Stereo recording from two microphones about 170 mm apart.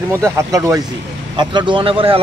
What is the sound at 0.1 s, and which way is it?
A man's voice, 15° right (ahead or behind).